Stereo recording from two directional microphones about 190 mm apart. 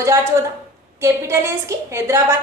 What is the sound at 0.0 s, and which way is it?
A woman's voice, 15° right (ahead or behind).